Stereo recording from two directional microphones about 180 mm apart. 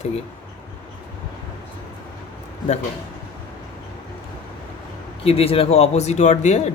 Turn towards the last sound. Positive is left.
turn(degrees=40)  # may be behind; listen again after turning